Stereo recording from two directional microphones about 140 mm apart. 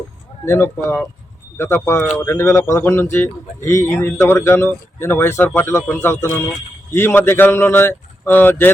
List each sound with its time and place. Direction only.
0.4 s a man's voice: 15° left (ahead or behind)